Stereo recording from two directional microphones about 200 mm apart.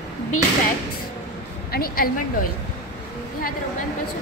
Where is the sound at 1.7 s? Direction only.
45° left (ahead or behind).